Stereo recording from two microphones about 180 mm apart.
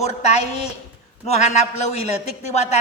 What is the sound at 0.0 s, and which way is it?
A man's voice, 40° left (ahead or behind).